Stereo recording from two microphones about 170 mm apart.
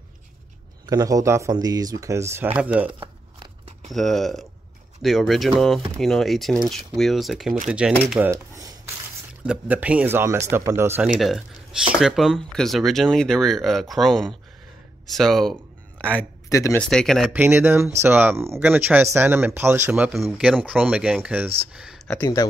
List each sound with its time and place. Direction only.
0.8 s speech: 20° right (ahead or behind)
2.9 s crunch: 30° right (ahead or behind)
3.9 s speech: centre (ahead or behind)
8.3 s a sound: 20° right (ahead or behind)
9.4 s speech: 10° right (ahead or behind)
11.1 s a man's voice: centre (ahead or behind)
16.4 s speech: 20° left (ahead or behind)
16.9 s speech: 5° left (ahead or behind)
17.3 s speech: 10° right (ahead or behind)
21.7 s a sound: 5° right (ahead or behind)
22.0 s speech: 5° left (ahead or behind)